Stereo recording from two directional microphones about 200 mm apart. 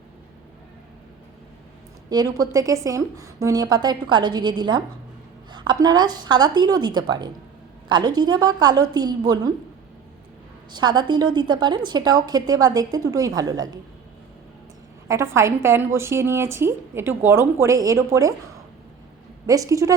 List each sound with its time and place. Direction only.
2.0 s a woman's voice: 20° right (ahead or behind)
10.7 s a woman's voice: 20° right (ahead or behind)
15.0 s a woman's voice: 15° right (ahead or behind)
19.5 s a woman's voice: 15° right (ahead or behind)